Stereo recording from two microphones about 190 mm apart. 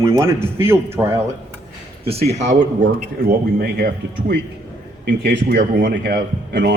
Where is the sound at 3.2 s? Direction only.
50° right (ahead or behind).